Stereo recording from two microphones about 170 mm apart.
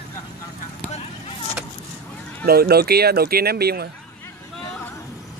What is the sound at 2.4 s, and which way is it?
Speech, 65° right (ahead or behind).